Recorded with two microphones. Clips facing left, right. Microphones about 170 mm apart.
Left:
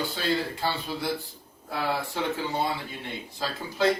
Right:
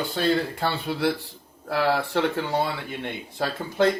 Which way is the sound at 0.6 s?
65° right (ahead or behind).